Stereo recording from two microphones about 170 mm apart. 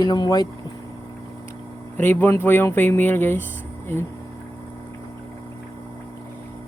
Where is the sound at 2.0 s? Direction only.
10° left (ahead or behind).